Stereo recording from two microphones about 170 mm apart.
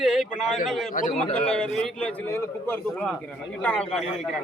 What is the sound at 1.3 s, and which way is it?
A man's voice, 5° left (ahead or behind).